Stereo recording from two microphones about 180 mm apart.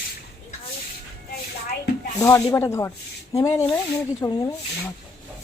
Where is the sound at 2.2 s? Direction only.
15° left (ahead or behind).